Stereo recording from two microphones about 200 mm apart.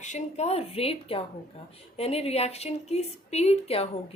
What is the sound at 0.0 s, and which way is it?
A woman's voice, 35° left (ahead or behind).